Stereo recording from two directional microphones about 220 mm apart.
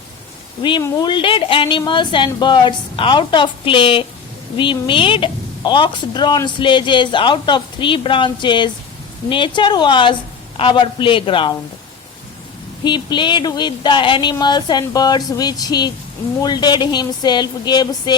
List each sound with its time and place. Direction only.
0.6 s a woman's voice: 20° left (ahead or behind)
12.8 s a woman's voice: 20° left (ahead or behind)